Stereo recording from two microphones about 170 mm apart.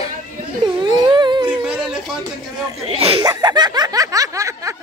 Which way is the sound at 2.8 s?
35° right (ahead or behind).